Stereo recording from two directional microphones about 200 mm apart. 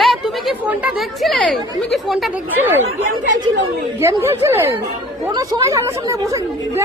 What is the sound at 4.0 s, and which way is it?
Speech, 10° right (ahead or behind).